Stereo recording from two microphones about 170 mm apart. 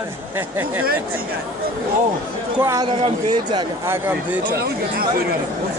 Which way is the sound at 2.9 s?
35° right (ahead or behind).